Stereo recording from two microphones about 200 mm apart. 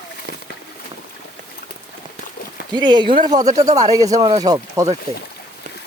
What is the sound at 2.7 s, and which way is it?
Speech, 20° right (ahead or behind).